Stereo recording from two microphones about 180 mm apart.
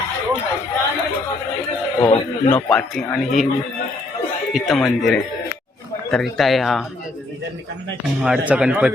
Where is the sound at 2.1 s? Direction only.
25° left (ahead or behind).